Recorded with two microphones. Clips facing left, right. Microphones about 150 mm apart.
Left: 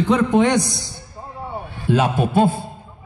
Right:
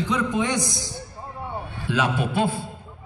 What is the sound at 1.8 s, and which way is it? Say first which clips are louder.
Speech: left 6 dB; 45° left (ahead or behind).